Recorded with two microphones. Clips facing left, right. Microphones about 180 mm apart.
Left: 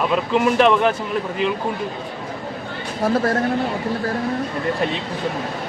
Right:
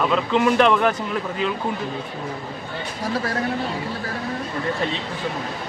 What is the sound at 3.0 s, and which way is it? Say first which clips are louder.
Speech: left 7 dB; 50° left (ahead or behind).